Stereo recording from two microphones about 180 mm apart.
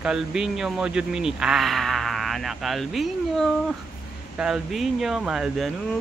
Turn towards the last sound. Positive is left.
turn(degrees=0)  # may be behind; listen again after turning